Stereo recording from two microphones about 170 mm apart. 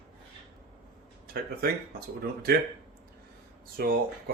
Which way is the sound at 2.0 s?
65° right (ahead or behind).